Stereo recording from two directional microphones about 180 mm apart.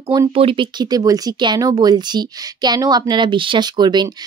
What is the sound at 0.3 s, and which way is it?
Speech, 30° right (ahead or behind).